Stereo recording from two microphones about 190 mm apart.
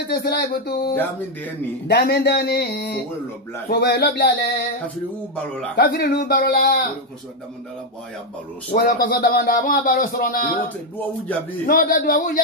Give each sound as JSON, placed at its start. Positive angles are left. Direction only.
{"t": 0.1, "sound": "speech", "side_deg": 55}
{"t": 0.9, "sound": "speech", "side_deg": 10}
{"t": 1.9, "sound": "speech", "side_deg": 55}
{"t": 5.8, "sound": "speech", "side_deg": 60}
{"t": 8.7, "sound": "speech", "side_deg": 50}
{"t": 11.6, "sound": "speech", "side_deg": 50}